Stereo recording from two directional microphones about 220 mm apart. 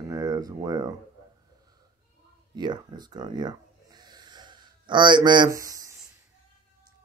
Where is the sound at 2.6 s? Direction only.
20° right (ahead or behind).